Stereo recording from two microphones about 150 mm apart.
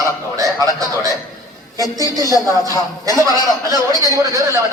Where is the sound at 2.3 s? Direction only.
25° left (ahead or behind).